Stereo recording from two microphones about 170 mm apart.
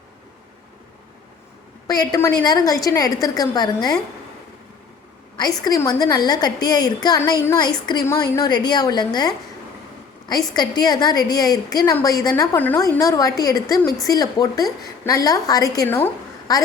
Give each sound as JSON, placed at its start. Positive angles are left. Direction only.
{"t": 1.9, "sound": "a woman's voice", "side_deg": 20}
{"t": 5.4, "sound": "a woman's voice", "side_deg": 25}